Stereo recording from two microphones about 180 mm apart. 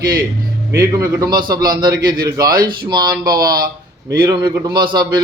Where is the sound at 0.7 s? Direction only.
20° right (ahead or behind).